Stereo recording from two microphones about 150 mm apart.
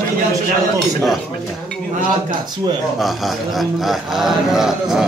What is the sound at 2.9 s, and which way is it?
A man's voice, centre (ahead or behind).